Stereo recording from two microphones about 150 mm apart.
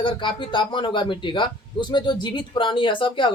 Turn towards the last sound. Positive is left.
turn(degrees=35)  # may be behind; listen again after turning